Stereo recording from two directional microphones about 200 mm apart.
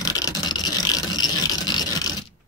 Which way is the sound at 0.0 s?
15° left (ahead or behind).